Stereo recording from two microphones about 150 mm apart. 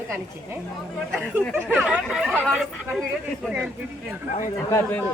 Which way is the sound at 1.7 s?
5° right (ahead or behind).